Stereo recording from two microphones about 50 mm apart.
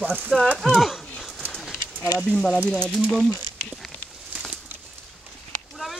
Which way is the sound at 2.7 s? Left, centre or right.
Right.